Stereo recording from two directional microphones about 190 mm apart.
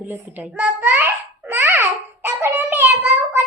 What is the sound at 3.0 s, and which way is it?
Child singing, 10° right (ahead or behind).